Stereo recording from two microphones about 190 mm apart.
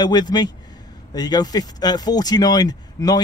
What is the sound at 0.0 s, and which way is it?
Speech, 20° left (ahead or behind).